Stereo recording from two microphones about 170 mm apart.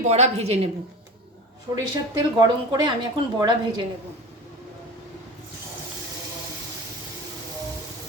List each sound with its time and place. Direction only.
0.0 s a woman's voice: 40° right (ahead or behind)
1.7 s speech: 25° right (ahead or behind)